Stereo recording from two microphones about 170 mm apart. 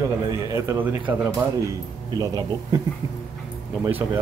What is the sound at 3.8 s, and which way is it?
Speech, 15° right (ahead or behind).